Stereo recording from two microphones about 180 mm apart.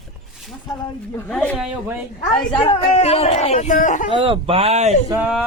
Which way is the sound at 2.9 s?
35° left (ahead or behind).